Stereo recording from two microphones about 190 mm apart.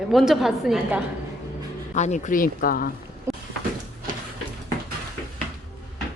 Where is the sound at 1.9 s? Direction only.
40° left (ahead or behind).